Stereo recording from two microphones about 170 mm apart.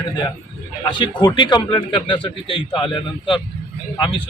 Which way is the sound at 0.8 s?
25° left (ahead or behind).